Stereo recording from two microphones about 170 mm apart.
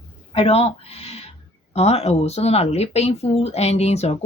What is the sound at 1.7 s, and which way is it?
Speech, 40° left (ahead or behind).